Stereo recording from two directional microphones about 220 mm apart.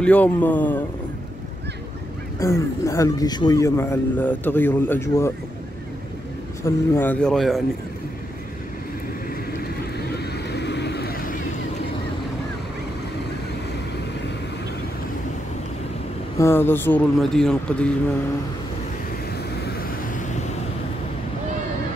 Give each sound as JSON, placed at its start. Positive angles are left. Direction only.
{"t": 0.0, "sound": "a man's voice", "side_deg": 5}
{"t": 2.4, "sound": "a man's voice", "side_deg": 15}
{"t": 6.6, "sound": "speech", "side_deg": 10}
{"t": 9.6, "sound": "vehicle", "side_deg": 45}
{"t": 16.3, "sound": "a man's voice", "side_deg": 10}